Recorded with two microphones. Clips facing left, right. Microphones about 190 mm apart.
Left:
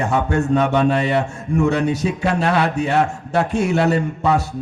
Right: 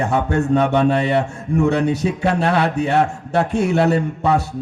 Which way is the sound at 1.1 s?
60° right (ahead or behind).